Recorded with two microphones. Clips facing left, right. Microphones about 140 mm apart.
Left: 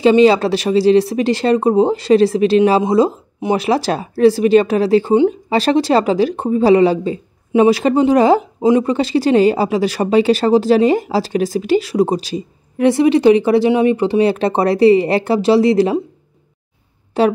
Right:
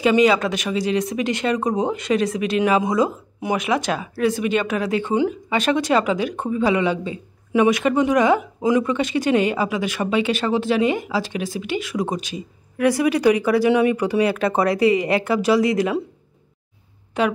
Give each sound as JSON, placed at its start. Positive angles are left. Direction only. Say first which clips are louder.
{"t": 0.0, "sound": "speech", "louder": "left 6 dB", "side_deg": 30}
{"t": 17.1, "sound": "speech", "louder": "left 7 dB", "side_deg": 35}